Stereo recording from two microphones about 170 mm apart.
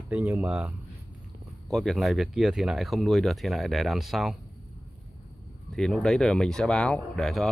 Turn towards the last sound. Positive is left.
turn(degrees=0)  # may be behind; listen again after turning